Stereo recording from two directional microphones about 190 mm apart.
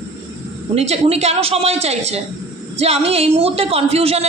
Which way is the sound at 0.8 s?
35° right (ahead or behind).